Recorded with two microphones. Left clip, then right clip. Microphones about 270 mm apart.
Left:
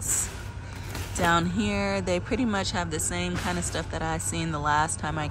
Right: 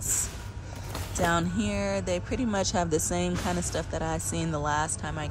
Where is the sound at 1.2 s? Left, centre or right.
Centre.